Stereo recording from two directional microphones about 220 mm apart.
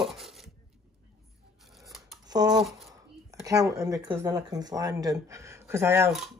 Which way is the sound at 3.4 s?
15° right (ahead or behind).